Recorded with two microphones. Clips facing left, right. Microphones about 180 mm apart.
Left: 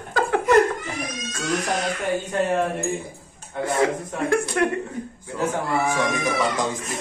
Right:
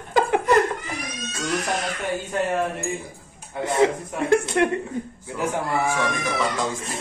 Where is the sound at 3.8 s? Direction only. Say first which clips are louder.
Right 4 dB; 20° right (ahead or behind).